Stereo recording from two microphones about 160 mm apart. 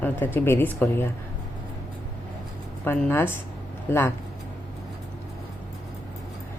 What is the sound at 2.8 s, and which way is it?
Speech, 10° left (ahead or behind).